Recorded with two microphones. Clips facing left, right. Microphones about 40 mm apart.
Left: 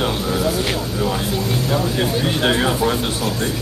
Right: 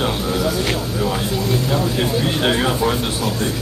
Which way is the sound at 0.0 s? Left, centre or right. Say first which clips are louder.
Even; centre.